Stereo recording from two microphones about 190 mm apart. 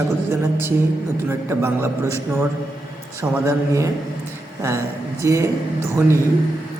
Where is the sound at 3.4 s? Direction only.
15° right (ahead or behind).